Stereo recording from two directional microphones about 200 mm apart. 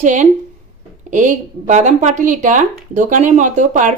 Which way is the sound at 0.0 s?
35° right (ahead or behind).